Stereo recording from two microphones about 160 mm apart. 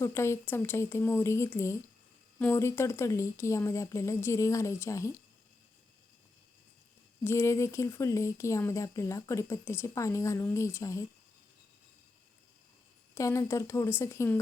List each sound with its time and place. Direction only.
0.0 s a woman's voice: 15° left (ahead or behind)
7.3 s a woman's voice: 15° left (ahead or behind)
13.1 s a woman's voice: 20° left (ahead or behind)